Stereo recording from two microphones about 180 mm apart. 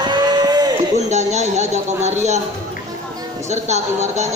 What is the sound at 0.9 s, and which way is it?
A man's voice, 40° right (ahead or behind).